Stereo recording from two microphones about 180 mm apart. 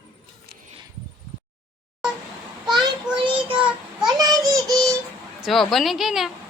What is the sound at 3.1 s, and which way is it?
Child singing, 30° right (ahead or behind).